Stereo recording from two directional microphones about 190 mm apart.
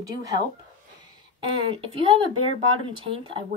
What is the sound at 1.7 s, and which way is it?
Speech, 30° right (ahead or behind).